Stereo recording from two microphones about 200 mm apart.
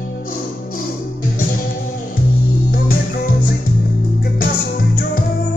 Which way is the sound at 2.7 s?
50° left (ahead or behind).